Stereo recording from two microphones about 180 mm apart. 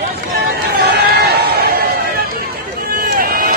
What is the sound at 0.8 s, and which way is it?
Run, 60° right (ahead or behind).